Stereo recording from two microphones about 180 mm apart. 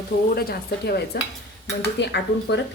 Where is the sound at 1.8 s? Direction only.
70° left (ahead or behind).